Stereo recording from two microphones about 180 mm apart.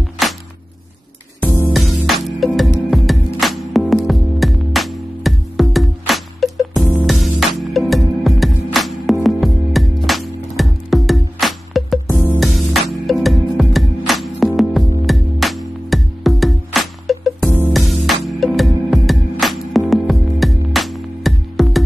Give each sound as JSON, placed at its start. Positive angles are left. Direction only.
{"t": 0.2, "sound": "music", "side_deg": 0}
{"t": 1.4, "sound": "music", "side_deg": 15}
{"t": 1.7, "sound": "music", "side_deg": 0}